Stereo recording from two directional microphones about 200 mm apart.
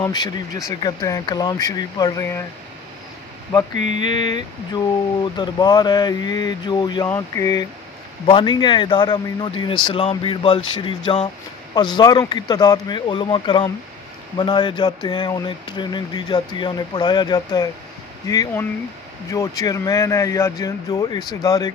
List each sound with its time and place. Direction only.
0.0 s speech: 20° left (ahead or behind)
4.0 s speech: 25° left (ahead or behind)